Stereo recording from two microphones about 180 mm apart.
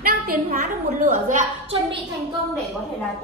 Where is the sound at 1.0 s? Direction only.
45° right (ahead or behind).